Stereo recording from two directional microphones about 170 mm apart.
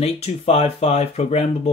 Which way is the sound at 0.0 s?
35° left (ahead or behind).